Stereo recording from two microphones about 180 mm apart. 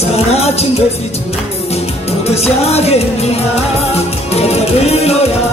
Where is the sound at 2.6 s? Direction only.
35° left (ahead or behind).